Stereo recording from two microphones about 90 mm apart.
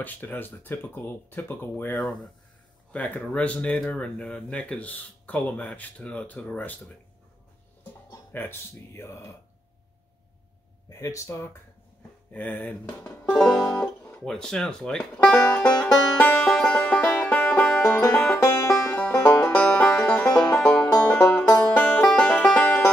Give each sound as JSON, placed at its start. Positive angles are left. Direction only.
{"t": 0.0, "sound": "speech", "side_deg": 20}
{"t": 2.0, "sound": "speech", "side_deg": 5}
{"t": 2.9, "sound": "speech", "side_deg": 15}
{"t": 8.3, "sound": "speech", "side_deg": 25}
{"t": 11.0, "sound": "speech", "side_deg": 35}
{"t": 12.3, "sound": "speech", "side_deg": 15}
{"t": 13.3, "sound": "music", "side_deg": 5}
{"t": 18.4, "sound": "music", "side_deg": 30}
{"t": 18.9, "sound": "music", "side_deg": 15}